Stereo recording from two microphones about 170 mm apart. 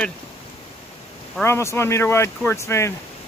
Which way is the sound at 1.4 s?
15° left (ahead or behind).